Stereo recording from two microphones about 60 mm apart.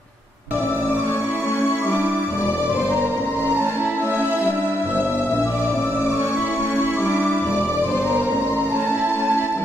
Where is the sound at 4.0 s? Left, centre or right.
Right.